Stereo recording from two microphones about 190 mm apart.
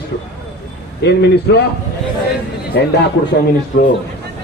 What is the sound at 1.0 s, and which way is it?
Speech, 60° left (ahead or behind).